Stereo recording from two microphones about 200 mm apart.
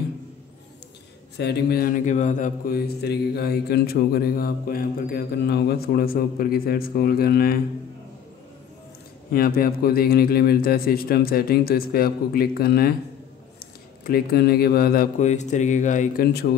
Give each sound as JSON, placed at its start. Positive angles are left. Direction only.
{"t": 1.4, "sound": "a man's voice", "side_deg": 50}
{"t": 9.3, "sound": "a man's voice", "side_deg": 50}